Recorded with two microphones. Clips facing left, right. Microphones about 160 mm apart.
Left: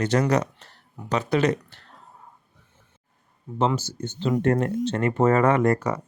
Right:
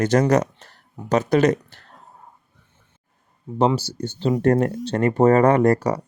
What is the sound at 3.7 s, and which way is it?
Speech, 35° right (ahead or behind).